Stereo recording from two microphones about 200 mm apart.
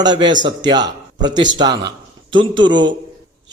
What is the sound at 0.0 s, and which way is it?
A man's voice, 20° right (ahead or behind).